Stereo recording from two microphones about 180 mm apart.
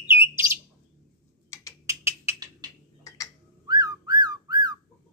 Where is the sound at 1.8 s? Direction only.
15° right (ahead or behind).